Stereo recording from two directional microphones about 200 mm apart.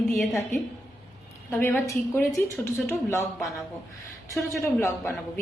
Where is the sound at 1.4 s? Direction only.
10° left (ahead or behind).